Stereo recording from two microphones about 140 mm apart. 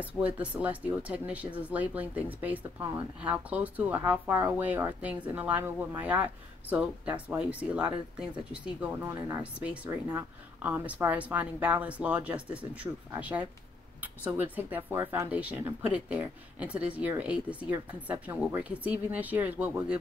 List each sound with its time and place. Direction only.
0.0 s speech: 10° right (ahead or behind)